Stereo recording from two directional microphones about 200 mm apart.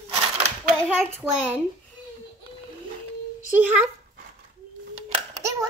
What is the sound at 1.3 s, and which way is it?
Speech, 10° right (ahead or behind).